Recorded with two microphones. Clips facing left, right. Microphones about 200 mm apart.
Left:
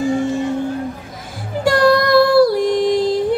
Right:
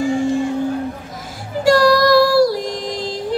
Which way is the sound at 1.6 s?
55° left (ahead or behind).